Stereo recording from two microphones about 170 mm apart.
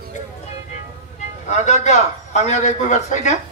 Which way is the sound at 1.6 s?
45° left (ahead or behind).